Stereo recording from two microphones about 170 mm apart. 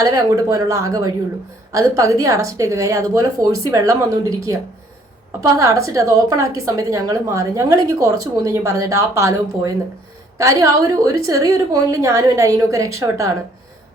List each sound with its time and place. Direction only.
0.0 s a woman's voice: 20° right (ahead or behind)
5.4 s a woman's voice: 20° right (ahead or behind)